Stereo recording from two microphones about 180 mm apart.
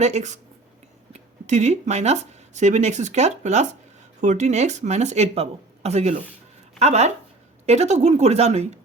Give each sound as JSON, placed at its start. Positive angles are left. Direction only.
{"t": 0.0, "sound": "speech", "side_deg": -40}